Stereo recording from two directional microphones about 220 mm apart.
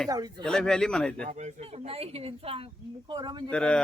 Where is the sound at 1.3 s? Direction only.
30° right (ahead or behind).